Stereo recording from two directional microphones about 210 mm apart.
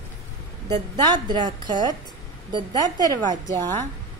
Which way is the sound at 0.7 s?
25° right (ahead or behind).